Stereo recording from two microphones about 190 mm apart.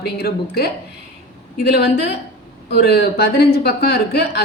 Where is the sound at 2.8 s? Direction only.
55° left (ahead or behind).